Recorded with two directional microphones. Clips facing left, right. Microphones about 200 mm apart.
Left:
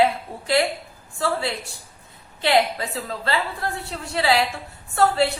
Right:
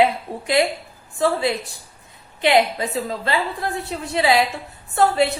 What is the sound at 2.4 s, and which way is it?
A woman's voice, 20° right (ahead or behind).